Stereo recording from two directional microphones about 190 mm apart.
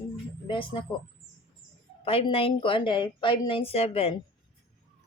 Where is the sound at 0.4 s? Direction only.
25° left (ahead or behind).